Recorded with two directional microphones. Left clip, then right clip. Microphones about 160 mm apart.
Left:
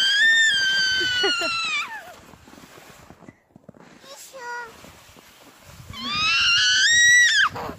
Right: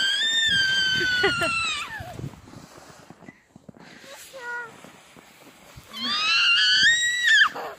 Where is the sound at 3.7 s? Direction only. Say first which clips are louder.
Left 1 dB; 5° left (ahead or behind).